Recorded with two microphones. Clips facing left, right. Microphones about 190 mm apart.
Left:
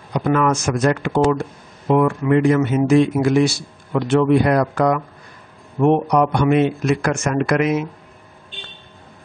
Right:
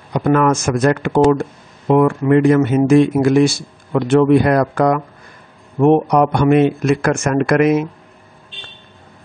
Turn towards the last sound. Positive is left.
turn(degrees=-55)  # may be behind; listen again after turning